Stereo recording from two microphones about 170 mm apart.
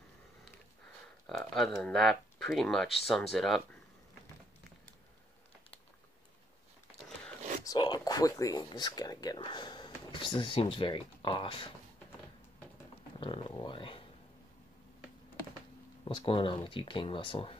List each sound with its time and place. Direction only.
1.3 s speech: centre (ahead or behind)
7.6 s speech: 25° left (ahead or behind)
13.2 s speech: 35° left (ahead or behind)
16.0 s speech: 30° left (ahead or behind)